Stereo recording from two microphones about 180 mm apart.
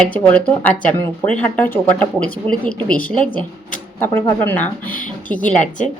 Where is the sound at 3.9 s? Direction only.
10° left (ahead or behind).